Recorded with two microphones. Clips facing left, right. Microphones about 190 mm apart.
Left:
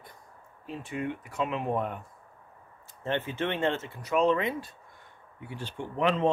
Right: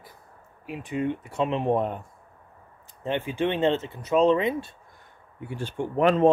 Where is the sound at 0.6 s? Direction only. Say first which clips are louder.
Right 6 dB; 15° right (ahead or behind).